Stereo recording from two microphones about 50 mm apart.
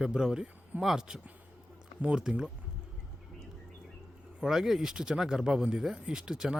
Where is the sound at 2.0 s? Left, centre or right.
Right.